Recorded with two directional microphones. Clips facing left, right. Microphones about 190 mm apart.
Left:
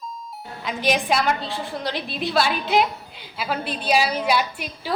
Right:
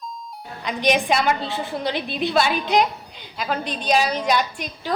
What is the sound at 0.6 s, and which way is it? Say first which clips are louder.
A woman's voice: right 2 dB; 5° left (ahead or behind).